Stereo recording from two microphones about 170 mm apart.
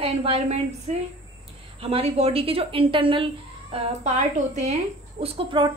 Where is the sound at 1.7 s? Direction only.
35° right (ahead or behind).